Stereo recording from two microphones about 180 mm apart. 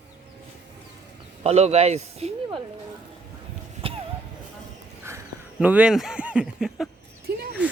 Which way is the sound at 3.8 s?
30° right (ahead or behind).